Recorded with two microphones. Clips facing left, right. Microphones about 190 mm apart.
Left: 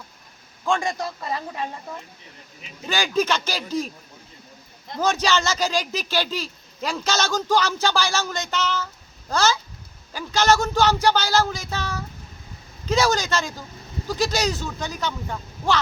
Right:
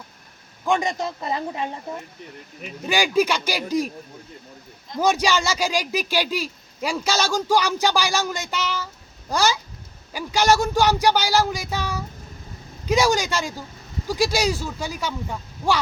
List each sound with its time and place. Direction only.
0.6 s a man's voice: 20° right (ahead or behind)
2.8 s speech: 10° right (ahead or behind)
4.9 s speech: 10° right (ahead or behind)